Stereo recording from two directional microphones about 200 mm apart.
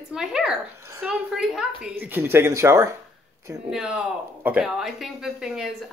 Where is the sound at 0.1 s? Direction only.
5° right (ahead or behind).